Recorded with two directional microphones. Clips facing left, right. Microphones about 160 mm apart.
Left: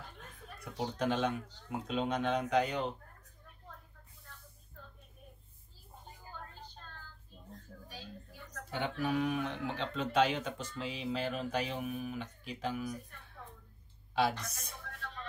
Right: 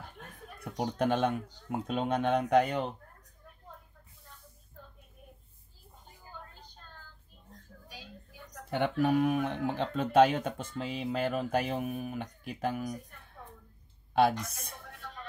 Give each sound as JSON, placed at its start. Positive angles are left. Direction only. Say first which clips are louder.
{"t": 0.2, "sound": "a sound", "louder": "right 4 dB", "side_deg": -55}
{"t": 0.9, "sound": "speech", "louder": "right 4 dB", "side_deg": -55}
{"t": 8.6, "sound": "speech", "louder": "right 7 dB", "side_deg": -60}
{"t": 14.4, "sound": "speech", "louder": "right 4 dB", "side_deg": -55}